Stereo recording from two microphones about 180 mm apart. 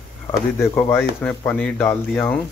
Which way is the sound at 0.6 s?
15° left (ahead or behind).